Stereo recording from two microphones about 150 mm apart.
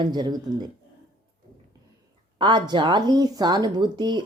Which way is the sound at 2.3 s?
30° right (ahead or behind).